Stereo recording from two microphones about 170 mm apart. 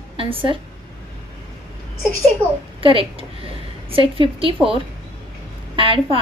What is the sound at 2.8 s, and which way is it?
A woman's voice, 35° right (ahead or behind).